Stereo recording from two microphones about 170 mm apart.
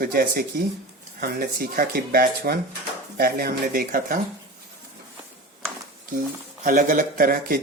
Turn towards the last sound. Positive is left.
turn(degrees=-60)  # may be behind; listen again after turning